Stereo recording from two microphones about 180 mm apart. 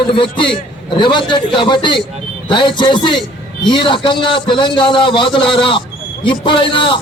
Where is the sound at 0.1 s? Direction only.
25° left (ahead or behind).